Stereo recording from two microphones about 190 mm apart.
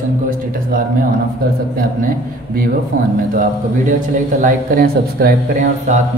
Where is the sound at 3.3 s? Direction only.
45° right (ahead or behind).